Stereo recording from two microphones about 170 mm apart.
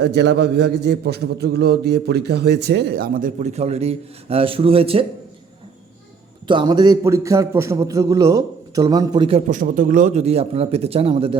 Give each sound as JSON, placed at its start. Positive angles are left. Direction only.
{"t": 0.0, "sound": "a man's voice", "side_deg": -90}
{"t": 6.5, "sound": "a man's voice", "side_deg": -25}
{"t": 9.5, "sound": "speech", "side_deg": -50}